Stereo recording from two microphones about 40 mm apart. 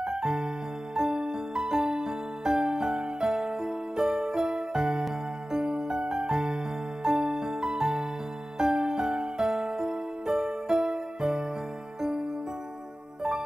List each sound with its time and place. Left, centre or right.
0.0 s music: centre